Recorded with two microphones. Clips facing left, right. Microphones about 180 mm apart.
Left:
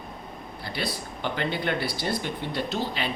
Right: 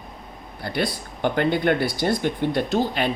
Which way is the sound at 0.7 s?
50° right (ahead or behind).